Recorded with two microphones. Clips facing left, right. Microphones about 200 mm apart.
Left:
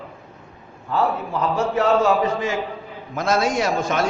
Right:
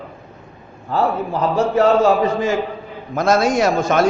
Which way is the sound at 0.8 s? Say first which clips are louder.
Right 3 dB; 35° right (ahead or behind).